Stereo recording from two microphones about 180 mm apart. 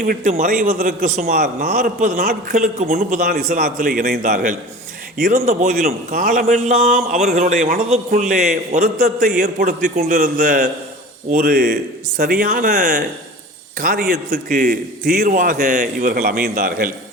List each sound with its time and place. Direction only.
0.0 s speech: 45° right (ahead or behind)
6.5 s a man's voice: 40° right (ahead or behind)
9.4 s a man's voice: 60° right (ahead or behind)